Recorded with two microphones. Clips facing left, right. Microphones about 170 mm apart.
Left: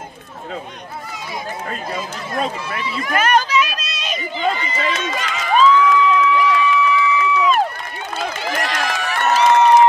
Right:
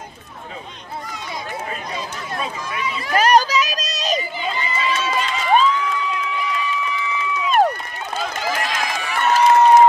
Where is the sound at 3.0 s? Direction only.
35° right (ahead or behind).